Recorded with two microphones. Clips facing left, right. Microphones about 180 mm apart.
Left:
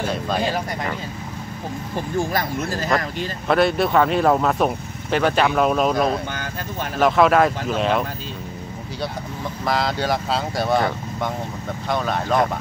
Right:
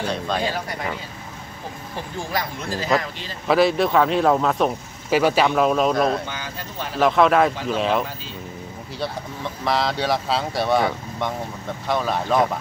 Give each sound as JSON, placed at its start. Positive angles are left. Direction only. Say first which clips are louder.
{"t": 0.0, "sound": "a sound", "louder": "left 1 dB", "side_deg": 5}
{"t": 2.1, "sound": "speech", "louder": "left 5 dB", "side_deg": 45}
{"t": 3.4, "sound": "speech", "louder": "right 1 dB", "side_deg": 0}
{"t": 6.3, "sound": "speech", "louder": "left 3 dB", "side_deg": 50}
{"t": 7.0, "sound": "speech", "louder": "left 1 dB", "side_deg": 0}
{"t": 9.7, "sound": "speech", "louder": "even", "side_deg": 0}